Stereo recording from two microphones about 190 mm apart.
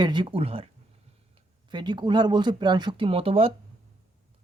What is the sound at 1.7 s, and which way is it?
Speech, 25° right (ahead or behind).